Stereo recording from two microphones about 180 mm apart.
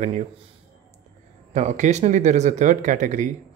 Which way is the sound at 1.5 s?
40° right (ahead or behind).